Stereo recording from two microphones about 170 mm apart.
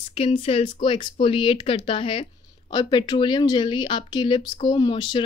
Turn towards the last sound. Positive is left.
turn(degrees=30)  # may be behind; listen again after turning